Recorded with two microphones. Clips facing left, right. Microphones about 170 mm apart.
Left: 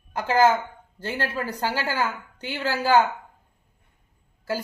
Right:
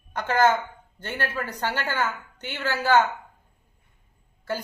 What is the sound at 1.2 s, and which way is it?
Speech, 30° left (ahead or behind).